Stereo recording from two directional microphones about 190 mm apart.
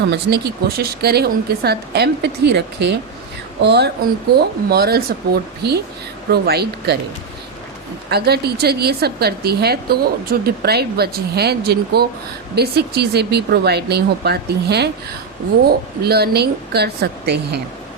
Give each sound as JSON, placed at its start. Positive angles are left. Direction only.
{"t": 0.1, "sound": "a woman's voice", "side_deg": -60}
{"t": 8.1, "sound": "a woman's voice", "side_deg": -55}